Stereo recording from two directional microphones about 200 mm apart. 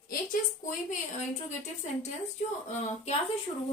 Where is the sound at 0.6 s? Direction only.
40° left (ahead or behind).